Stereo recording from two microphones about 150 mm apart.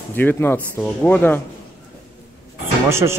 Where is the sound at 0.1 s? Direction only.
15° left (ahead or behind).